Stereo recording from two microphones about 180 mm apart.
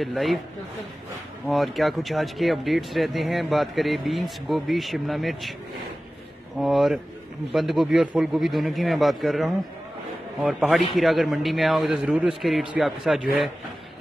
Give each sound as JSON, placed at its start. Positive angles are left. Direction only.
{"t": 0.0, "sound": "speech", "side_deg": 0}
{"t": 1.5, "sound": "speech", "side_deg": 0}
{"t": 6.6, "sound": "speech", "side_deg": 0}